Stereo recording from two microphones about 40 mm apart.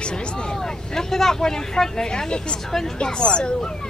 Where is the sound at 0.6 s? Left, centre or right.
Centre.